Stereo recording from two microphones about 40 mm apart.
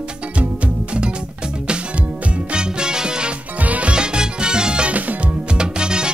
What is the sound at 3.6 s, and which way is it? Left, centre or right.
Music, right.